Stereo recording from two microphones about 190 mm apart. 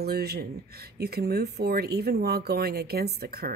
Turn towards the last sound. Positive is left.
turn(degrees=-55)  # may be behind; listen again after turning